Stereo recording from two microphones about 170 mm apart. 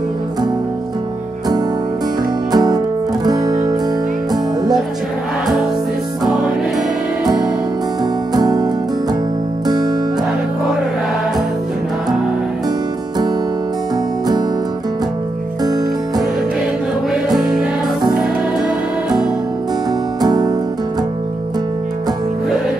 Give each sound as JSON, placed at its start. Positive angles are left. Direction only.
{"t": 2.5, "sound": "music", "side_deg": -25}
{"t": 8.0, "sound": "music", "side_deg": -25}
{"t": 17.3, "sound": "music", "side_deg": 0}
{"t": 20.2, "sound": "music", "side_deg": -20}